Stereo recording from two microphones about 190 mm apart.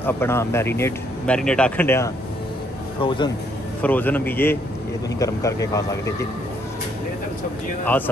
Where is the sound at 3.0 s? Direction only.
25° left (ahead or behind).